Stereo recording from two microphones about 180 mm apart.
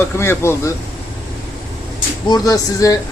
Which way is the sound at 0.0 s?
15° left (ahead or behind).